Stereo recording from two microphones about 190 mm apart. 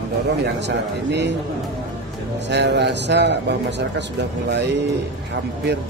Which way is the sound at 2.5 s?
65° right (ahead or behind).